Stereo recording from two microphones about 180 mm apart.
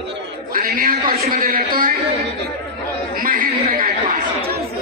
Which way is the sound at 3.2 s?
50° right (ahead or behind).